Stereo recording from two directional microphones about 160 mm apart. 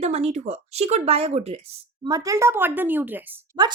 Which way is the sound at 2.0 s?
20° right (ahead or behind).